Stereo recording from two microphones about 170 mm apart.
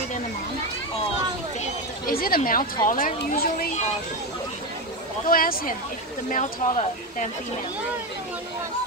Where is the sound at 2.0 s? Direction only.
60° left (ahead or behind).